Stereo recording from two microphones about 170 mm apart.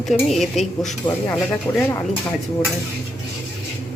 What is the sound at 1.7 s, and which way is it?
Speech, 15° left (ahead or behind).